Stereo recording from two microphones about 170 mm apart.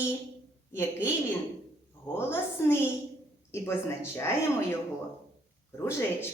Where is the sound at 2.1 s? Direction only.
15° left (ahead or behind).